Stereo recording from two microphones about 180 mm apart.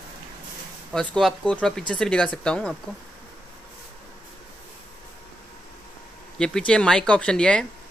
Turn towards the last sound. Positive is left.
turn(degrees=5)  # may be behind; listen again after turning